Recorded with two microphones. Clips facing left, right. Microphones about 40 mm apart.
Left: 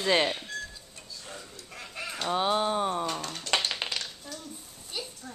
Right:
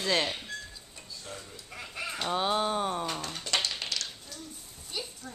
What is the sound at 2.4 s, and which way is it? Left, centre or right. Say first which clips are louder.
Speech: left 2 dB; centre.